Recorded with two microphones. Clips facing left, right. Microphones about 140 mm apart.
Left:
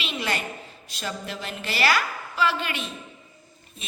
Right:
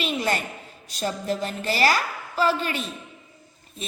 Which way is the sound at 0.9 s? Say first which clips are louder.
Right 6 dB; 40° right (ahead or behind).